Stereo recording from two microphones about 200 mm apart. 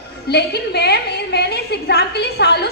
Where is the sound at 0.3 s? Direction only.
55° left (ahead or behind).